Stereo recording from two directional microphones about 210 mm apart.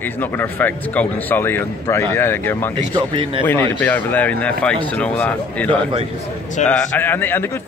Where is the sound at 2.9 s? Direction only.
25° right (ahead or behind).